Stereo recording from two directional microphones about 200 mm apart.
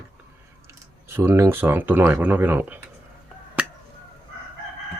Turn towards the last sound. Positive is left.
turn(degrees=-5)  # may be behind; listen again after turning